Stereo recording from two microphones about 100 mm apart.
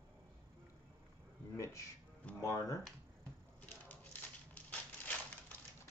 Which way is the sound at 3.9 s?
15° left (ahead or behind).